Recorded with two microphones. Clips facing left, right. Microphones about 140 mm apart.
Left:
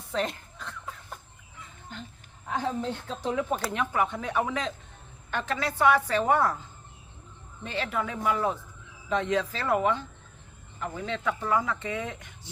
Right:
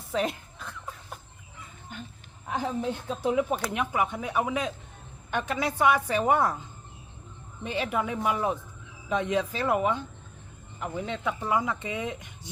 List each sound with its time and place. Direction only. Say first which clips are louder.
0.1 s a sound: right 2 dB; 5° right (ahead or behind)
2.5 s speech: even; 15° right (ahead or behind)
7.6 s speech: right 2 dB; 15° right (ahead or behind)